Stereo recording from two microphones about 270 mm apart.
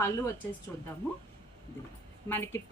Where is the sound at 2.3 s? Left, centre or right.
Centre.